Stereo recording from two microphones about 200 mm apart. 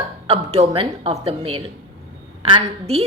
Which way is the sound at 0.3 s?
30° right (ahead or behind).